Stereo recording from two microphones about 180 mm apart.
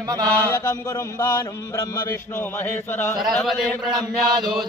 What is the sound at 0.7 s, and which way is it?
A man's voice, 20° left (ahead or behind).